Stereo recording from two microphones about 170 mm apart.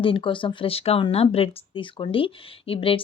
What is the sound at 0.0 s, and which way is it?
Speech, 30° left (ahead or behind).